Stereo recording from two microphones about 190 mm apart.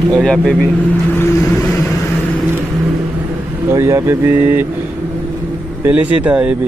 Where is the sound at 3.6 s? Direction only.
15° right (ahead or behind).